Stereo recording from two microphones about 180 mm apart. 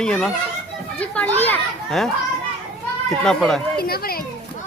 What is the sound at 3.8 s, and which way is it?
Speech, 60° left (ahead or behind).